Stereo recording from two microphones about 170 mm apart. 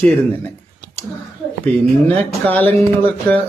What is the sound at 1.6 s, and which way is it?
Speech, 10° left (ahead or behind).